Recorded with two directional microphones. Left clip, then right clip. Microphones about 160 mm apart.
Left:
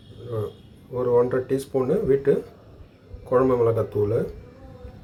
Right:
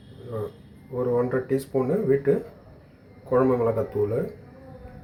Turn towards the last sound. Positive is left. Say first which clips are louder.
# left 2 dB
turn(degrees=0)  # may be behind; listen again after turning